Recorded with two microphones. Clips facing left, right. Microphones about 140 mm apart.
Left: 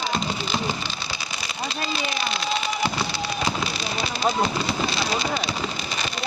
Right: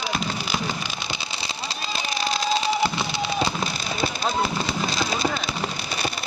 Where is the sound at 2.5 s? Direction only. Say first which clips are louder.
Right 4 dB; 30° right (ahead or behind).